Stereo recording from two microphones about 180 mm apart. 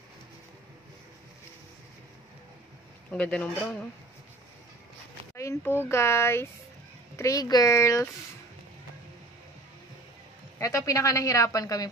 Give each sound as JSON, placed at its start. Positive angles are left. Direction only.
{"t": 3.1, "sound": "a woman's voice", "side_deg": 5}
{"t": 5.3, "sound": "a woman's voice", "side_deg": 15}
{"t": 10.6, "sound": "a woman's voice", "side_deg": 20}